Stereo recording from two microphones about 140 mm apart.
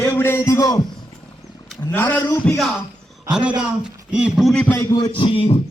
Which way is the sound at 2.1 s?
15° left (ahead or behind).